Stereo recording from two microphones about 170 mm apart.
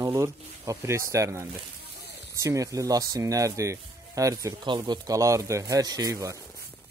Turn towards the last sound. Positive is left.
turn(degrees=-20)  # may be behind; listen again after turning